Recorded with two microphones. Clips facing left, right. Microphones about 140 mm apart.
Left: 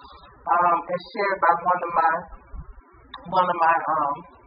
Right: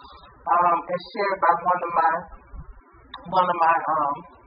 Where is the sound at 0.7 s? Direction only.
Centre (ahead or behind).